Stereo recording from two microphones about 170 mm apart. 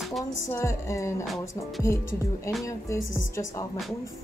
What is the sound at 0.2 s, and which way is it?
Speech, 15° left (ahead or behind).